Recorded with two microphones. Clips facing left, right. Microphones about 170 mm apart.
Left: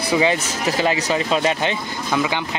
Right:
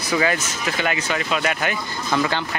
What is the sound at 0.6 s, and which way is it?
Speech, 35° left (ahead or behind).